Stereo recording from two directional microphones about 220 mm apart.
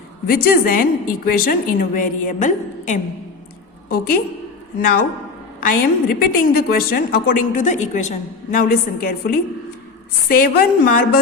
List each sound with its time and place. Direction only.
0.3 s a woman's voice: 45° left (ahead or behind)
5.5 s a woman's voice: 40° left (ahead or behind)